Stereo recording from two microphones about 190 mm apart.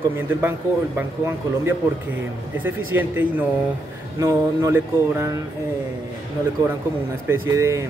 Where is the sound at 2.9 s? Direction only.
10° right (ahead or behind).